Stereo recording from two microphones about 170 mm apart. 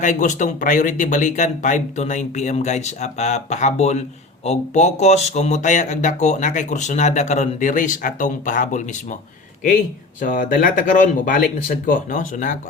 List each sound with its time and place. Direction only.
0.0 s speech: 45° left (ahead or behind)
10.2 s speech: 55° left (ahead or behind)